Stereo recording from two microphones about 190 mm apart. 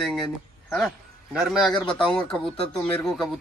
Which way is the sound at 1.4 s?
Centre (ahead or behind).